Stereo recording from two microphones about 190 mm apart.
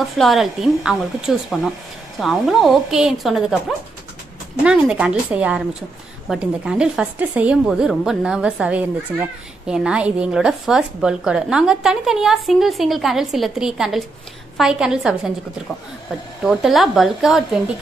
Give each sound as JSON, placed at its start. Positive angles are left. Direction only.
{"t": 0.0, "sound": "a woman's voice", "side_deg": 0}
{"t": 16.4, "sound": "a woman's voice", "side_deg": 0}